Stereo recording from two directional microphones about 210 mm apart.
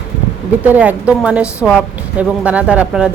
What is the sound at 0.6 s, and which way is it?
A woman's voice, 5° right (ahead or behind).